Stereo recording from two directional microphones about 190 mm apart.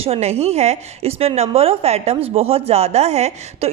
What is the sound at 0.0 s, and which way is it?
A woman's voice, 35° right (ahead or behind).